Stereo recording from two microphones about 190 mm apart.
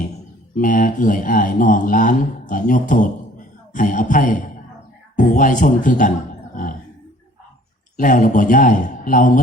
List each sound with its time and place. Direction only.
0.5 s a man's voice: 45° left (ahead or behind)
7.9 s speech: 45° left (ahead or behind)